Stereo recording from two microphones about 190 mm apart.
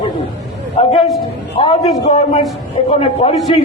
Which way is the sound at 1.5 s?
30° left (ahead or behind).